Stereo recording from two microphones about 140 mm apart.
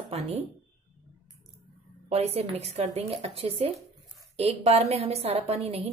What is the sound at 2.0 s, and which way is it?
A woman's voice, 45° right (ahead or behind).